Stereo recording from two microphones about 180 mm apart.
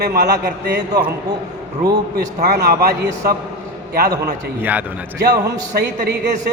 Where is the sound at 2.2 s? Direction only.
65° right (ahead or behind).